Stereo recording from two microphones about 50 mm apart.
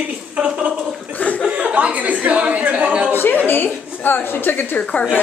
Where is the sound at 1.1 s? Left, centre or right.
Left.